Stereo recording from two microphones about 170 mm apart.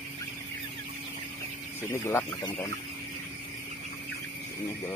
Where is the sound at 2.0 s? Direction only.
15° left (ahead or behind).